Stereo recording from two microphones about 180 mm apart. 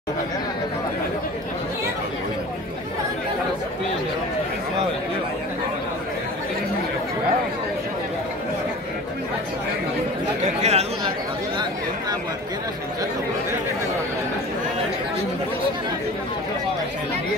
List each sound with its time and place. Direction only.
10.4 s speech: 40° right (ahead or behind)